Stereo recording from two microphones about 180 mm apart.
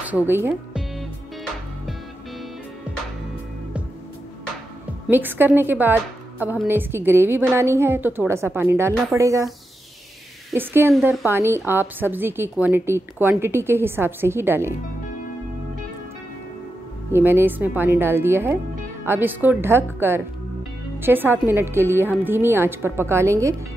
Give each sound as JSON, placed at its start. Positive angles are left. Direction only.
{"t": 0.0, "sound": "music", "side_deg": -10}
{"t": 5.0, "sound": "a woman's voice", "side_deg": -10}
{"t": 10.5, "sound": "a woman's voice", "side_deg": -15}
{"t": 17.1, "sound": "a woman's voice", "side_deg": -10}